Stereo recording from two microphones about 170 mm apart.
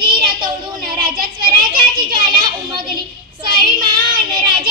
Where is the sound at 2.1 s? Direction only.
55° right (ahead or behind).